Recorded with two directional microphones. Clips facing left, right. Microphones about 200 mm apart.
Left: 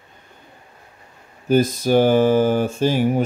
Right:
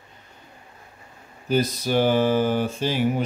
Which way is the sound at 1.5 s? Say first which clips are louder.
Left 6 dB; 50° left (ahead or behind).